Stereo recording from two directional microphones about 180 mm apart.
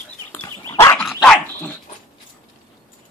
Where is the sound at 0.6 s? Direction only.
15° left (ahead or behind).